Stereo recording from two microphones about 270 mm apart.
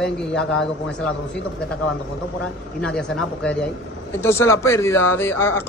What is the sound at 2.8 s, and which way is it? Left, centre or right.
Speech, centre.